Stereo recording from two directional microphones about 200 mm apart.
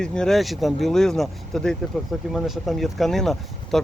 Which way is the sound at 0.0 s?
5° left (ahead or behind).